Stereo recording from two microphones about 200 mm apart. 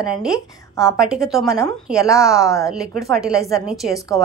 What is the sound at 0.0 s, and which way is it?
A woman's voice, 5° right (ahead or behind).